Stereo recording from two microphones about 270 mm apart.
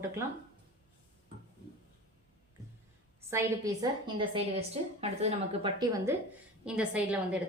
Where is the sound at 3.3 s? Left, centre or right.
Centre.